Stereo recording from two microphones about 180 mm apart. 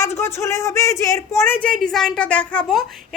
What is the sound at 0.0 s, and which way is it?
A woman's voice, 15° left (ahead or behind).